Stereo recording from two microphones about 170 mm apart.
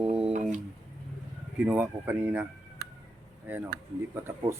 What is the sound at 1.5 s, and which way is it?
Speech, 10° right (ahead or behind).